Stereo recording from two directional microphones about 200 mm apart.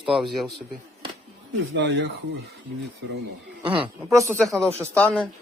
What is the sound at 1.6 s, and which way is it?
Speech, 70° right (ahead or behind).